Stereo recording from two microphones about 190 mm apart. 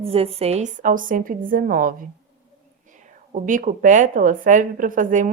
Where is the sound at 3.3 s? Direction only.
45° right (ahead or behind).